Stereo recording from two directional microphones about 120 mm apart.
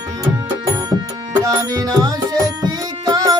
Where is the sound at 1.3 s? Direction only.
30° right (ahead or behind).